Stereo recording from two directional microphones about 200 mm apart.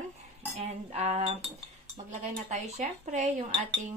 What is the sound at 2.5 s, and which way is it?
Speech, 35° right (ahead or behind).